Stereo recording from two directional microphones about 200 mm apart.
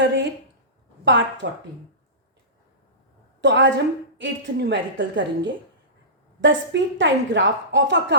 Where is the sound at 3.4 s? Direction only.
65° right (ahead or behind).